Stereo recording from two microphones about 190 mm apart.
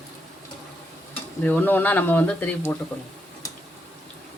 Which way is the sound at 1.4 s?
10° left (ahead or behind).